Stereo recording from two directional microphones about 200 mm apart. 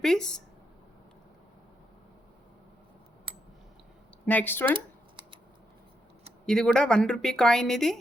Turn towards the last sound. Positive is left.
turn(degrees=0)  # may be behind; listen again after turning